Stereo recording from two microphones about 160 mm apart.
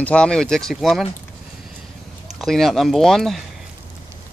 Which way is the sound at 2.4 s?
Centre (ahead or behind).